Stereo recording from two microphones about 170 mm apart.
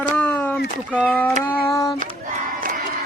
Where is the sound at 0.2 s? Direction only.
10° left (ahead or behind).